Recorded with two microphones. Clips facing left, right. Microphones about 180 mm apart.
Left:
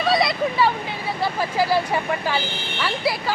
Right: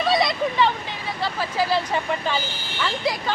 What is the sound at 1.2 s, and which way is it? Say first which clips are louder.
Speech: left 2 dB; 15° left (ahead or behind).